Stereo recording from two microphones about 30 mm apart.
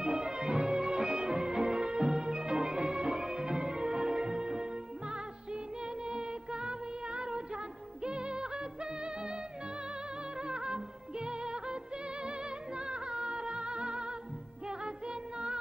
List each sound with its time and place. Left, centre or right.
0.0 s music: right
6.0 s music: right
10.4 s music: right